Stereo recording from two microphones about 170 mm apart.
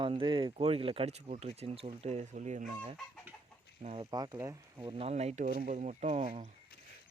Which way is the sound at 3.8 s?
35° right (ahead or behind).